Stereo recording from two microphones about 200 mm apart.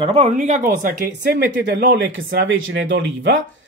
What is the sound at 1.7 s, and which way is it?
Speech, 65° right (ahead or behind).